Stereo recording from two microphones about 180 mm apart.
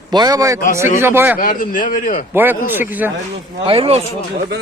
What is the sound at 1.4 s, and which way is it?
Speech, 50° left (ahead or behind).